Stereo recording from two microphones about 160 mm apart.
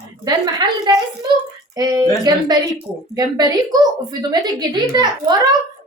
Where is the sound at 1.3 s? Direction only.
25° right (ahead or behind).